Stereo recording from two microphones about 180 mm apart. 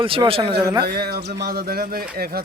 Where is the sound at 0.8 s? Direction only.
60° right (ahead or behind).